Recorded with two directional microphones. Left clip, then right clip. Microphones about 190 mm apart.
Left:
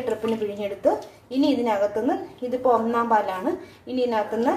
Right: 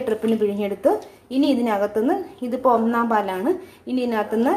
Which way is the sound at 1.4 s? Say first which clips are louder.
Right 1 dB; 30° right (ahead or behind).